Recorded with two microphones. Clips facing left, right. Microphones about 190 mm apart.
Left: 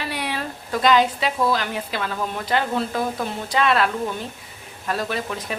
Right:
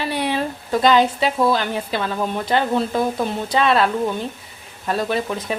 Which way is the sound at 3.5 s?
25° right (ahead or behind).